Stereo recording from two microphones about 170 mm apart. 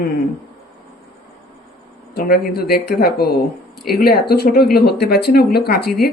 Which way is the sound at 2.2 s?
65° left (ahead or behind).